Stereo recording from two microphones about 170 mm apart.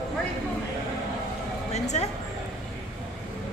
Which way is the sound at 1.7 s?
40° left (ahead or behind).